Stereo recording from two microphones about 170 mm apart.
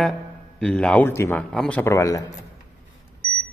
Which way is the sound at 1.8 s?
20° left (ahead or behind).